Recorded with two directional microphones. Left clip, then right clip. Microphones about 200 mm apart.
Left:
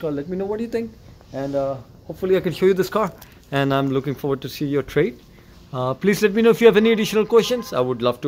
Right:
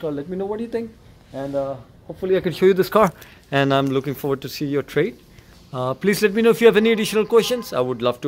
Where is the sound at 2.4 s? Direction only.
25° right (ahead or behind).